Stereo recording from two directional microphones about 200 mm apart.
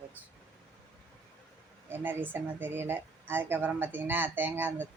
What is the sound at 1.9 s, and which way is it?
A woman's voice, 10° right (ahead or behind).